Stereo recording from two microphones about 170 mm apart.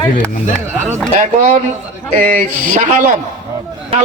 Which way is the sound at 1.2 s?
45° right (ahead or behind).